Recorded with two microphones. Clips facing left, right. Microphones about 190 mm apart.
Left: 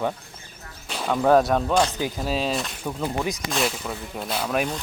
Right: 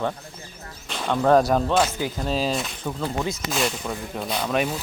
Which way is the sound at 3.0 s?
15° left (ahead or behind).